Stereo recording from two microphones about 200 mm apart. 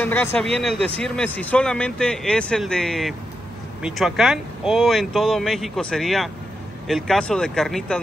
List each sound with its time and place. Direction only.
0.0 s a man's voice: 10° left (ahead or behind)